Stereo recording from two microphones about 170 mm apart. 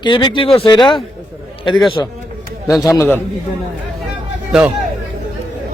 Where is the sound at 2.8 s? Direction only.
15° left (ahead or behind).